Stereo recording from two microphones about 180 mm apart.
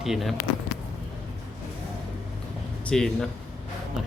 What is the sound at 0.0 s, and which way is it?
Speech, centre (ahead or behind).